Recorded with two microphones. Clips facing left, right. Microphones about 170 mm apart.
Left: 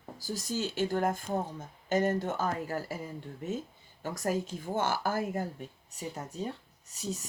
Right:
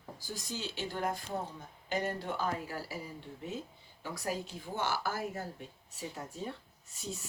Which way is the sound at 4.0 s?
45° left (ahead or behind).